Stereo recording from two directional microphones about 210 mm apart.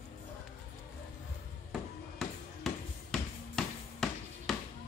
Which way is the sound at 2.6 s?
Centre (ahead or behind).